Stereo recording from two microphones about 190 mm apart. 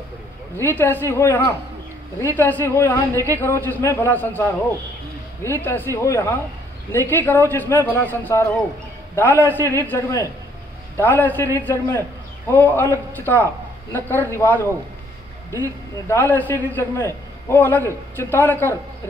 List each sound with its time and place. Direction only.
0.6 s a man's voice: 10° left (ahead or behind)
16.1 s a man's voice: 10° left (ahead or behind)